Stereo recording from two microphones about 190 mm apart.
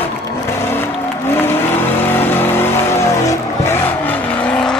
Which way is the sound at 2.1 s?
10° left (ahead or behind).